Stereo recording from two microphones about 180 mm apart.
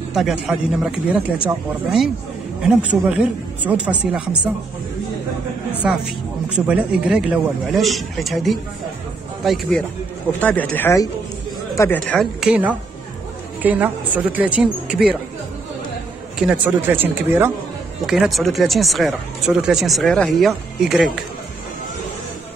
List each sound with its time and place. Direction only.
0.1 s speech: centre (ahead or behind)
5.8 s speech: 5° right (ahead or behind); by 12.0 s 15° left (ahead or behind)
12.0 s speech: centre (ahead or behind)
16.3 s speech: 5° right (ahead or behind)